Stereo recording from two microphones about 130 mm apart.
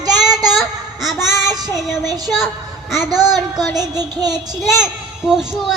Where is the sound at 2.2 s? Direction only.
Centre (ahead or behind).